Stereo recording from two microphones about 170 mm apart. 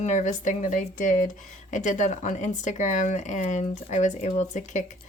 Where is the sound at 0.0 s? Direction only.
45° left (ahead or behind).